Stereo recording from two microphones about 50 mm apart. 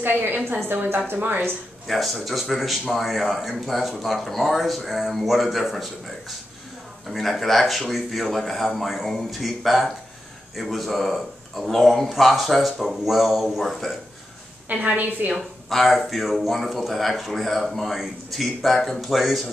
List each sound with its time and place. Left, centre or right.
0.0 s a woman's voice: right
1.9 s speech: centre
14.7 s a woman's voice: right
15.3 s speech: centre